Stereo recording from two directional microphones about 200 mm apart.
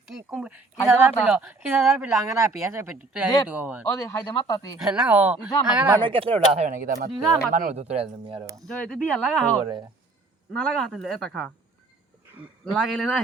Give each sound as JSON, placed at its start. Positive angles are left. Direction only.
{"t": 0.1, "sound": "speech", "side_deg": -5}
{"t": 3.8, "sound": "speech", "side_deg": 15}
{"t": 4.8, "sound": "speech", "side_deg": -5}
{"t": 6.0, "sound": "speech", "side_deg": -25}
{"t": 8.6, "sound": "speech", "side_deg": 5}
{"t": 9.6, "sound": "speech", "side_deg": -25}
{"t": 10.5, "sound": "speech", "side_deg": 0}
{"t": 12.7, "sound": "speech", "side_deg": 0}